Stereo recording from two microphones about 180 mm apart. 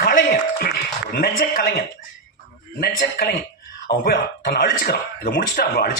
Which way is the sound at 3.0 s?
60° left (ahead or behind).